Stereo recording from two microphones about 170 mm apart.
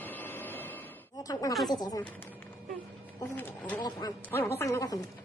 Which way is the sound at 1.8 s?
20° left (ahead or behind).